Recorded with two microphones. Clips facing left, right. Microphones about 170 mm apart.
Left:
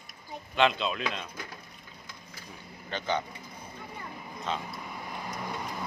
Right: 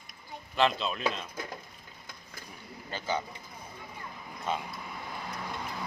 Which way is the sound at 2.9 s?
10° right (ahead or behind).